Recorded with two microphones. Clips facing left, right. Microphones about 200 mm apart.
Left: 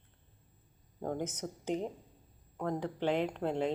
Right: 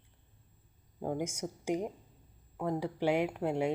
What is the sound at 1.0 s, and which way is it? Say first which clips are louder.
Speech: right 1 dB; 10° right (ahead or behind).